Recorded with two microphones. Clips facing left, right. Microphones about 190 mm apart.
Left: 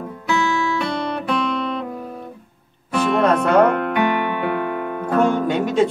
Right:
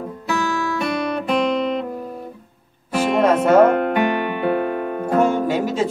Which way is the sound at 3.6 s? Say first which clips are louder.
Right 2 dB; 25° right (ahead or behind).